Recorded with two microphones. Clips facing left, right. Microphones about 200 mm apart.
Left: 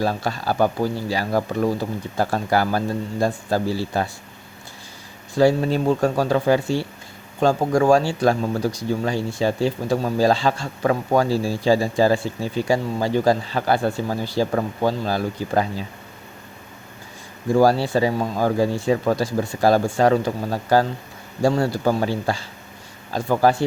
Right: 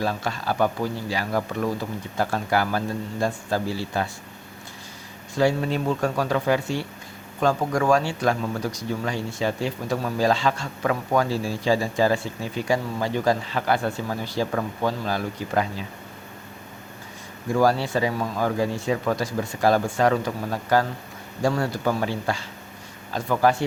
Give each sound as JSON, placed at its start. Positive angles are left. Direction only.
{"t": 0.0, "sound": "speech", "side_deg": 35}
{"t": 5.3, "sound": "speech", "side_deg": 35}
{"t": 17.5, "sound": "speech", "side_deg": 35}